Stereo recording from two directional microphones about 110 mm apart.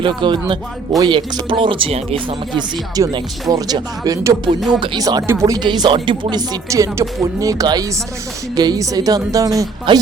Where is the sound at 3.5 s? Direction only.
35° right (ahead or behind).